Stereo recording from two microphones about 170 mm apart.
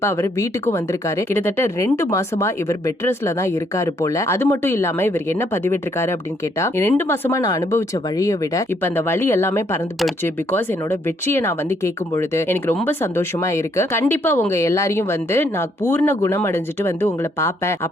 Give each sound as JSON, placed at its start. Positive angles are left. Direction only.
{"t": 0.0, "sound": "speech", "side_deg": 15}
{"t": 11.3, "sound": "speech", "side_deg": 15}